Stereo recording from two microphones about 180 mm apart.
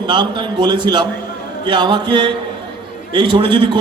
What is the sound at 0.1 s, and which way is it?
A man's voice, 25° right (ahead or behind).